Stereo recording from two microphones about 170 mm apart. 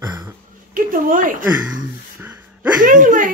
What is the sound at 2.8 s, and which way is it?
Speech, 50° right (ahead or behind).